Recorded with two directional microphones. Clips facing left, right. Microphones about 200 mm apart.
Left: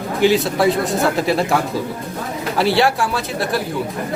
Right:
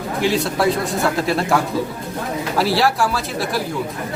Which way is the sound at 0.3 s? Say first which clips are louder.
Left 3 dB; centre (ahead or behind).